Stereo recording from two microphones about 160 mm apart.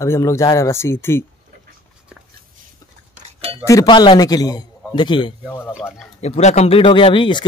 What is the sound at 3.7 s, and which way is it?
Speech, 25° left (ahead or behind).